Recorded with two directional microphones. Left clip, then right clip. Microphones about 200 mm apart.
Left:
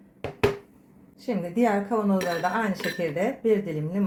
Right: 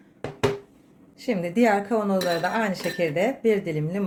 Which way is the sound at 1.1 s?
30° right (ahead or behind).